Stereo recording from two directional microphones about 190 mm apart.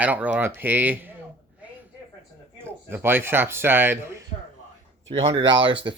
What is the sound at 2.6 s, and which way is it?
Speech, 10° right (ahead or behind).